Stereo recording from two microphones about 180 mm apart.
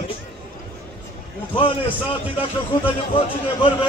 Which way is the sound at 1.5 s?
30° left (ahead or behind).